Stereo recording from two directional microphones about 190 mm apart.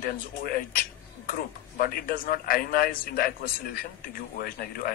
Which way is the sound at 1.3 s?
50° left (ahead or behind).